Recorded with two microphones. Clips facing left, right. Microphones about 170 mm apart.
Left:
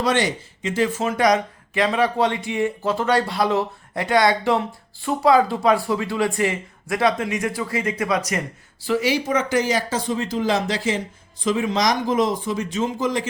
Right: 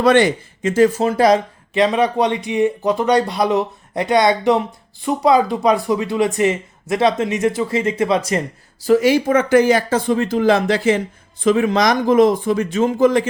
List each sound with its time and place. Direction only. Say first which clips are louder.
0.0 s speech: right 8 dB; 55° right (ahead or behind); by 8.4 s 30° right (ahead or behind)
8.8 s speech: right 7 dB; 45° right (ahead or behind)